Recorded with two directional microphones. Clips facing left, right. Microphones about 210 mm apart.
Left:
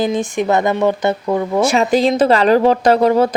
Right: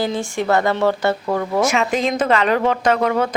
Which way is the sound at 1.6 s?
35° left (ahead or behind).